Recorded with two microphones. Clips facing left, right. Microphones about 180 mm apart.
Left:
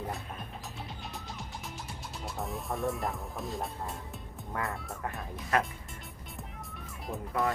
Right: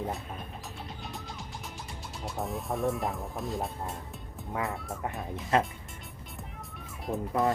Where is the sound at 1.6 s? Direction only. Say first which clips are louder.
Even; centre (ahead or behind).